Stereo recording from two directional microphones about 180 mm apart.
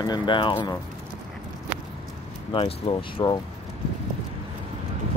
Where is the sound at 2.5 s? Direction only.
30° left (ahead or behind).